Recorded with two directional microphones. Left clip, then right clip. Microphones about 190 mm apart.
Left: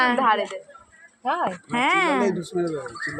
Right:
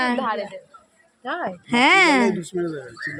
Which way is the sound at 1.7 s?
85° right.